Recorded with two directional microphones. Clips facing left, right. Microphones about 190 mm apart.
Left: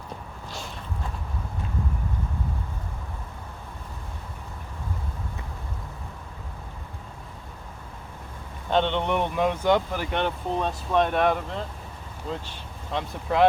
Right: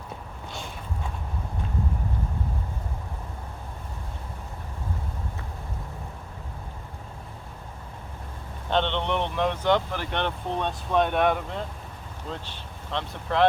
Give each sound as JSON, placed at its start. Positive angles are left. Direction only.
{"t": 8.7, "sound": "speech", "side_deg": 10}